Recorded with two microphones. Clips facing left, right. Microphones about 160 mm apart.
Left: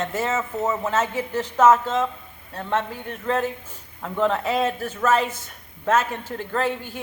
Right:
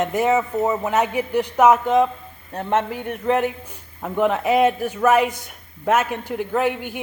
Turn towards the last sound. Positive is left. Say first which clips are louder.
# right 4 dB
turn(degrees=-15)  # may be behind; listen again after turning